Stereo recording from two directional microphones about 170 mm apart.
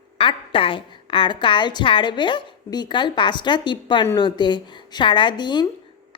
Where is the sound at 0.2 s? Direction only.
30° left (ahead or behind).